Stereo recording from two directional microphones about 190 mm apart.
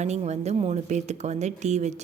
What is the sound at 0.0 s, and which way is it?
Speech, 35° right (ahead or behind).